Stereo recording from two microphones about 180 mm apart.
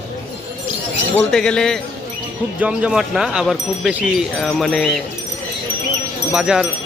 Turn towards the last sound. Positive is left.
turn(degrees=-5)  # may be behind; listen again after turning